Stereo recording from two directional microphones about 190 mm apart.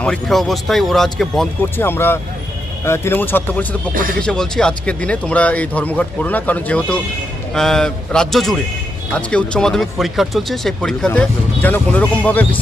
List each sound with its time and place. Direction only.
0.0 s speech: centre (ahead or behind)
3.9 s speech: 45° right (ahead or behind)
4.2 s speech: 5° left (ahead or behind)